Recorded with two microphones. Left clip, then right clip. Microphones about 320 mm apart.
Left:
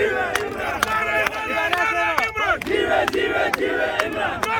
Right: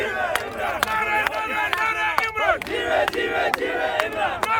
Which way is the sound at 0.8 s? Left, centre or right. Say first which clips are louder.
Left 2 dB; right.